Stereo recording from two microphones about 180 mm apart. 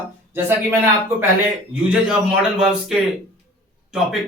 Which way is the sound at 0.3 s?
10° right (ahead or behind).